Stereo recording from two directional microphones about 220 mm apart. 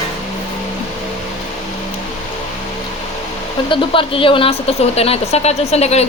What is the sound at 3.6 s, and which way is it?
Speech, 25° left (ahead or behind).